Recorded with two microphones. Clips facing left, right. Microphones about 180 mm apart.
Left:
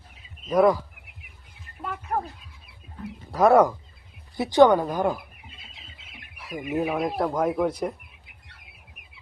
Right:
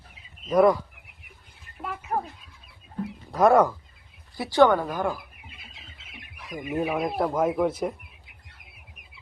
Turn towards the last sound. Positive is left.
turn(degrees=0)  # may be behind; listen again after turning